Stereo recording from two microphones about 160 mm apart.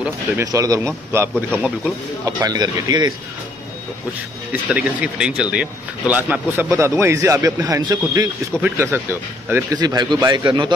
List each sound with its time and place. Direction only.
0.5 s speech: 20° right (ahead or behind)
1.3 s speech: 10° left (ahead or behind)
2.2 s speech: 25° right (ahead or behind)
4.5 s speech: 10° right (ahead or behind); by 10.7 s 25° right (ahead or behind)